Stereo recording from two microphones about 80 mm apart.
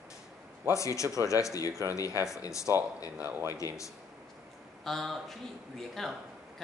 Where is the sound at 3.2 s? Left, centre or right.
Right.